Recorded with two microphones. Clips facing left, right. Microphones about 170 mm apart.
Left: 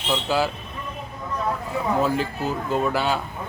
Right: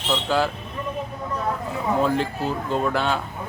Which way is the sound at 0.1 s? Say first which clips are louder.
Even; 5° left (ahead or behind).